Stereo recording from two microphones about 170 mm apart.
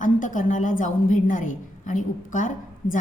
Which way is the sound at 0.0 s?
50° left (ahead or behind).